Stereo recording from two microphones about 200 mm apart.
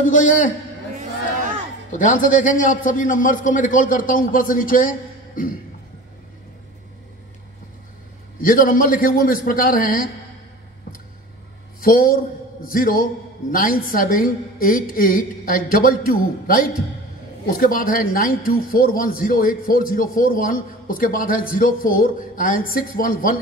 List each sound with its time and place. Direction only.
0.0 s a man's voice: 40° left (ahead or behind)
1.9 s a man's voice: 40° left (ahead or behind)
8.4 s a man's voice: 45° left (ahead or behind)
11.8 s a man's voice: 45° left (ahead or behind)